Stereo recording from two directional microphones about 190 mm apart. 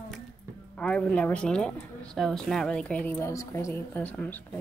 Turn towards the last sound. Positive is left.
turn(degrees=10)  # may be behind; listen again after turning